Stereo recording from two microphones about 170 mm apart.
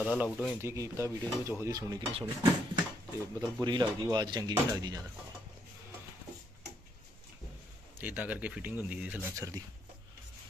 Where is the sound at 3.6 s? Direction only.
25° right (ahead or behind).